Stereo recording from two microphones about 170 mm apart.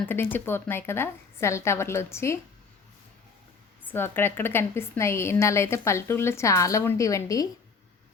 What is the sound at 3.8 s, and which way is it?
A woman's voice, 10° left (ahead or behind).